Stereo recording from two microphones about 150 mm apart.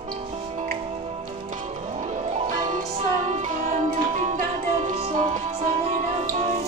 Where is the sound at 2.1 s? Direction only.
55° right (ahead or behind).